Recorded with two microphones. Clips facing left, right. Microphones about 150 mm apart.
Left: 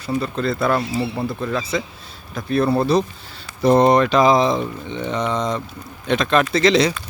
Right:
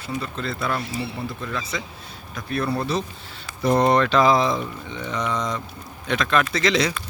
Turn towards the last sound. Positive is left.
turn(degrees=25)  # may be behind; listen again after turning